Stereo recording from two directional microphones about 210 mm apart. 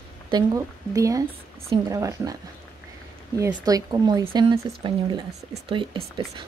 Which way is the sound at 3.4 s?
15° right (ahead or behind).